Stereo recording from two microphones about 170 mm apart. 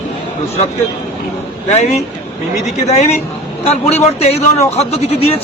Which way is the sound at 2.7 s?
40° left (ahead or behind).